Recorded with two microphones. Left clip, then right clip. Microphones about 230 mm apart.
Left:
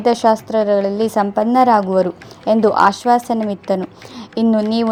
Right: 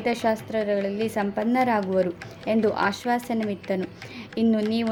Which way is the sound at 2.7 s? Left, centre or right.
Centre.